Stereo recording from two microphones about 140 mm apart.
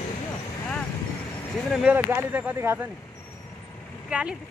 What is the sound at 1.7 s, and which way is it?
Speech, 5° right (ahead or behind).